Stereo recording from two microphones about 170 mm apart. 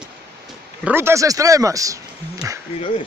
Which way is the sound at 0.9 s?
15° right (ahead or behind).